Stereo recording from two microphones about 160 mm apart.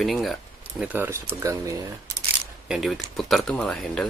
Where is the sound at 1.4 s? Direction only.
20° right (ahead or behind).